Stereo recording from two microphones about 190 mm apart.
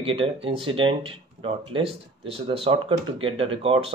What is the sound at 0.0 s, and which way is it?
Speech, 30° right (ahead or behind).